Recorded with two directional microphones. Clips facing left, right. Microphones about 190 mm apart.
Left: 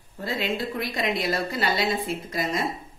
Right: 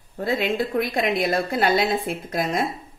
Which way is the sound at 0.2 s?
55° right (ahead or behind).